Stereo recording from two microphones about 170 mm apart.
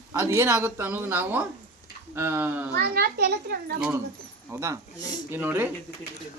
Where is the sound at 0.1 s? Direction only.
15° right (ahead or behind).